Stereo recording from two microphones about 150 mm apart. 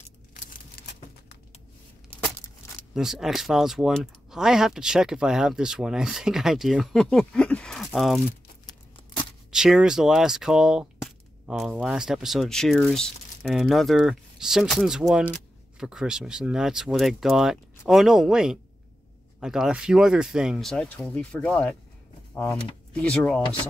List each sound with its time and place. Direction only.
0.3 s a sound: 60° left (ahead or behind)
2.9 s speech: 5° right (ahead or behind)
9.5 s speech: 5° right (ahead or behind)